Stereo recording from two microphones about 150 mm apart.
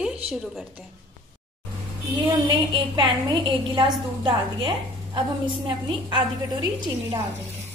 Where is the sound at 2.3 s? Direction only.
30° right (ahead or behind).